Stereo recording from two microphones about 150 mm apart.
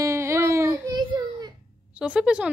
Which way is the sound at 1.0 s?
30° right (ahead or behind).